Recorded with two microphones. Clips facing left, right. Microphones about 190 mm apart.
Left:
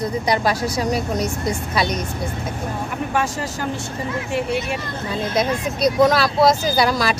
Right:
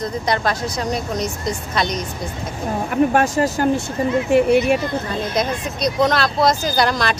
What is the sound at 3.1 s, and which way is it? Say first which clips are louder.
Speech: right 6 dB; 50° right (ahead or behind).